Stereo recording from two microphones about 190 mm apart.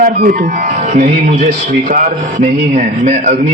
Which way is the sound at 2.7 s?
35° right (ahead or behind).